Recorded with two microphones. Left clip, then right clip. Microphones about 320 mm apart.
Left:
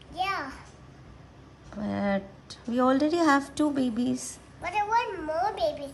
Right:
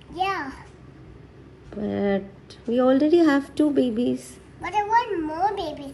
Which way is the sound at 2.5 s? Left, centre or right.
Centre.